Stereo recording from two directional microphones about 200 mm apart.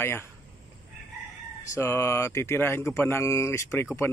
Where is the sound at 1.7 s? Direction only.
15° left (ahead or behind).